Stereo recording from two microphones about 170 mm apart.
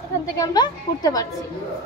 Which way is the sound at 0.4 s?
25° left (ahead or behind).